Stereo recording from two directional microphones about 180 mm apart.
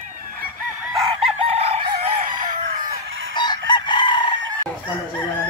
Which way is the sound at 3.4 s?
25° left (ahead or behind).